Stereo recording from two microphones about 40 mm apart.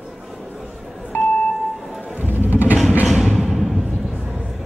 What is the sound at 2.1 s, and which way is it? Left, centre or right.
Music, right.